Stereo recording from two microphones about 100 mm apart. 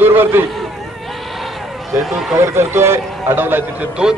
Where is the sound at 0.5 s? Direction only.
Centre (ahead or behind).